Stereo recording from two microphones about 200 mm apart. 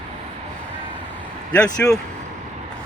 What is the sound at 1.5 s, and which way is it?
Speech, 5° left (ahead or behind).